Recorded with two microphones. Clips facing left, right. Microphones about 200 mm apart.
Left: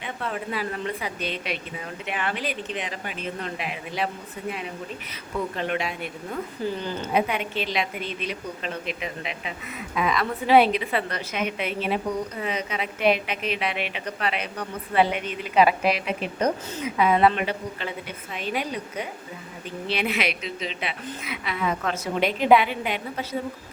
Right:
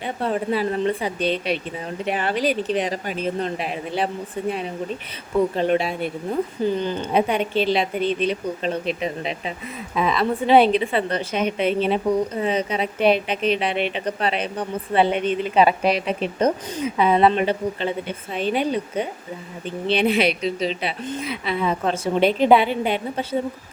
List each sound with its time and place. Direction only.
0.0 s a woman's voice: 30° right (ahead or behind)
6.3 s a woman's voice: 20° right (ahead or behind)